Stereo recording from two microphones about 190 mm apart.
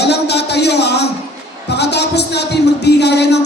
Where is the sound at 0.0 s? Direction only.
60° left (ahead or behind).